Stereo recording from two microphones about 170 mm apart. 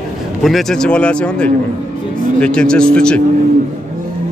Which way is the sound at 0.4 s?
Centre (ahead or behind).